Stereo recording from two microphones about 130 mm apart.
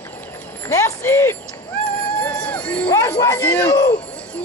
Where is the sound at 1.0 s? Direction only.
20° left (ahead or behind).